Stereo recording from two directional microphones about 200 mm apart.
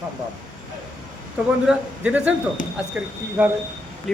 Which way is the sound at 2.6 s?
40° left (ahead or behind).